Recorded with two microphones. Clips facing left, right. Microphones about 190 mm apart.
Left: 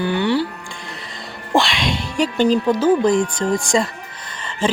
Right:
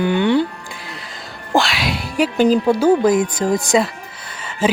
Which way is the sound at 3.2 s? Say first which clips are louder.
Right 1 dB; 40° right (ahead or behind).